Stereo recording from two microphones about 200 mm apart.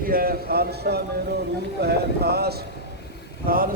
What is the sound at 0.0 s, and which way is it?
A man's voice, 45° right (ahead or behind).